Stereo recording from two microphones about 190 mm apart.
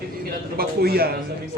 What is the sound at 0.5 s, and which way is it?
Speech, 55° right (ahead or behind).